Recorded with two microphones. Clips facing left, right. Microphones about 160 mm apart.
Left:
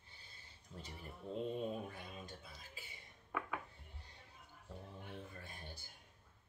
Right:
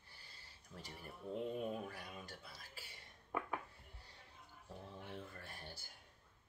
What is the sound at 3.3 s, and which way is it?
Dishes, 30° right (ahead or behind).